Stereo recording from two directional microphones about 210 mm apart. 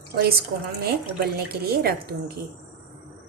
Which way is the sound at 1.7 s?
45° right (ahead or behind).